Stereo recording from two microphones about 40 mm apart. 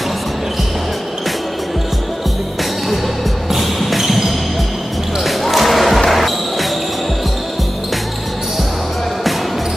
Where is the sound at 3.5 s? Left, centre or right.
Centre.